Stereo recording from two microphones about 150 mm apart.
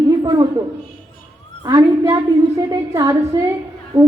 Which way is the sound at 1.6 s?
30° right (ahead or behind).